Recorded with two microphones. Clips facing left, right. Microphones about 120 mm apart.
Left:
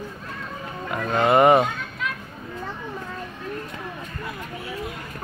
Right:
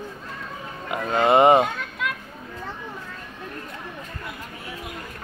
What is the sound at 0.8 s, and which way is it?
Speech, 20° right (ahead or behind).